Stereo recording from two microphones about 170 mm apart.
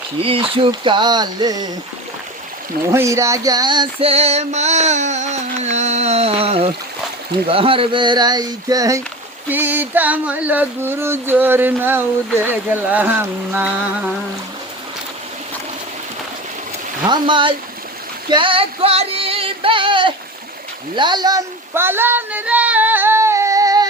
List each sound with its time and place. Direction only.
0.2 s speech: 35° right (ahead or behind)
2.9 s a sound: 15° right (ahead or behind); by 6.7 s 35° right (ahead or behind)
7.4 s speech: 35° right (ahead or behind)
9.5 s a sound: 10° right (ahead or behind)
17.1 s speech: 30° right (ahead or behind)
18.3 s music: 30° right (ahead or behind)
20.9 s child singing: 25° right (ahead or behind)